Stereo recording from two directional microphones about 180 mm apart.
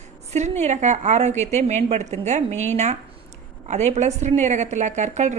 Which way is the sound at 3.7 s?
40° right (ahead or behind).